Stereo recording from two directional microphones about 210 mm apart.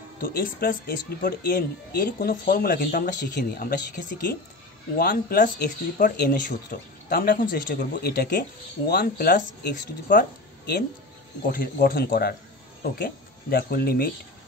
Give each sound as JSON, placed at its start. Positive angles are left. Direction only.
{"t": 0.2, "sound": "speech", "side_deg": 45}
{"t": 4.9, "sound": "speech", "side_deg": 45}
{"t": 11.4, "sound": "speech", "side_deg": 40}